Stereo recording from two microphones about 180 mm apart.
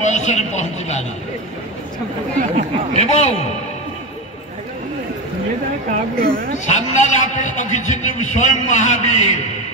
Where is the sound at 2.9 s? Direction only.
35° left (ahead or behind).